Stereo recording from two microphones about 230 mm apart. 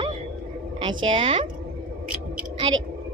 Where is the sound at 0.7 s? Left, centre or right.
Right.